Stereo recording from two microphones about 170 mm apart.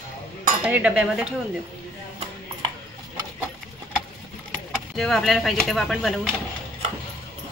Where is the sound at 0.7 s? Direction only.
10° right (ahead or behind).